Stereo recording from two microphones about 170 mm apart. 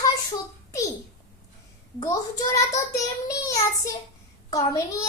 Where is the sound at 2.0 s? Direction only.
20° left (ahead or behind).